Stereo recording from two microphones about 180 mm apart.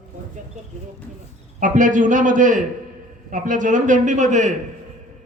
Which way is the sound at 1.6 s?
45° right (ahead or behind).